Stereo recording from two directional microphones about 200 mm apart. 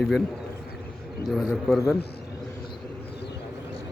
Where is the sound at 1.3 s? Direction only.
Centre (ahead or behind).